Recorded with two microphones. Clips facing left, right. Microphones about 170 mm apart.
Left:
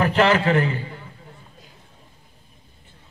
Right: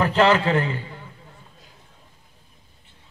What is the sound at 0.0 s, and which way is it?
Speech, 25° right (ahead or behind).